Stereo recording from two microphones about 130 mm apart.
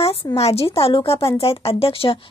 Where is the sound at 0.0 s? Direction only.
45° left (ahead or behind).